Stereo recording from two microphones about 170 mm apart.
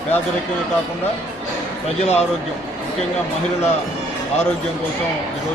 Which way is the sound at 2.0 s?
40° left (ahead or behind).